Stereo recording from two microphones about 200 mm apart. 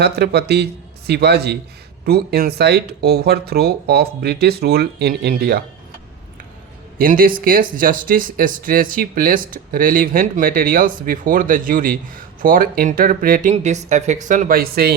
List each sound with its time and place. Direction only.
0.0 s speech: 55° right (ahead or behind)
7.0 s speech: 45° right (ahead or behind)